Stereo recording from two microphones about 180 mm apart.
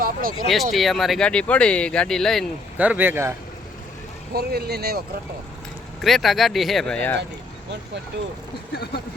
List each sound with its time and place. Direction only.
0.0 s a sound: 50° right (ahead or behind)
0.4 s speech: centre (ahead or behind)
2.7 s a man's voice: 10° right (ahead or behind)
4.4 s speech: 60° right (ahead or behind)
6.0 s speech: centre (ahead or behind)
8.7 s speech: 60° left (ahead or behind)